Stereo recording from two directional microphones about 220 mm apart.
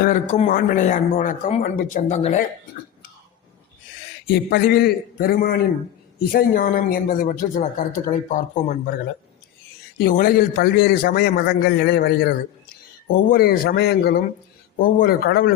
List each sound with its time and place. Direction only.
0.0 s a man's voice: 35° left (ahead or behind)
4.3 s a man's voice: 45° left (ahead or behind)
10.0 s a man's voice: 40° left (ahead or behind)
13.3 s a man's voice: 45° left (ahead or behind)